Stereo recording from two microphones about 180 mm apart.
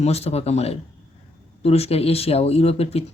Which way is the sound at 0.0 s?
35° left (ahead or behind).